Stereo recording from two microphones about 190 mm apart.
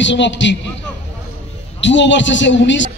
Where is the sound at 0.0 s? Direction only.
70° left (ahead or behind).